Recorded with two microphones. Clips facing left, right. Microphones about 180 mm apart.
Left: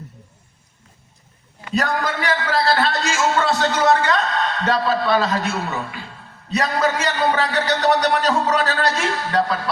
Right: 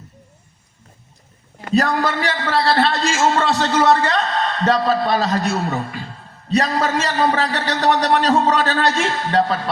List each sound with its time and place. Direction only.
1.7 s a man's voice: 35° right (ahead or behind)
9.3 s music: 25° right (ahead or behind)